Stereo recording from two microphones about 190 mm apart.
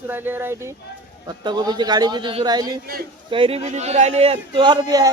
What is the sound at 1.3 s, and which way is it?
A man's voice, 20° right (ahead or behind).